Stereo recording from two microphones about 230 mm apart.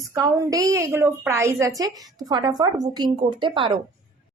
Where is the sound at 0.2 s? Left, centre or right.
Centre.